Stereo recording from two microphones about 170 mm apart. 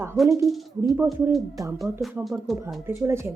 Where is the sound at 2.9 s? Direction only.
15° right (ahead or behind).